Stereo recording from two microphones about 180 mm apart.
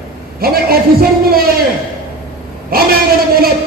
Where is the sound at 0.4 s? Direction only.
55° right (ahead or behind).